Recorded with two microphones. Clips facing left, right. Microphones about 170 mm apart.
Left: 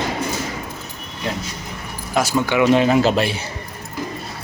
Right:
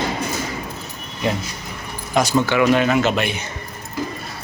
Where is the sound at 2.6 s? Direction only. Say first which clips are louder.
Left 5 dB; 30° left (ahead or behind).